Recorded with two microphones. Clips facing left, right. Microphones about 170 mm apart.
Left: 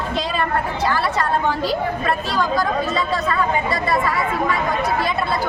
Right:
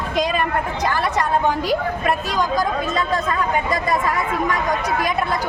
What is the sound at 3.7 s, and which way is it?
Speech, 15° right (ahead or behind).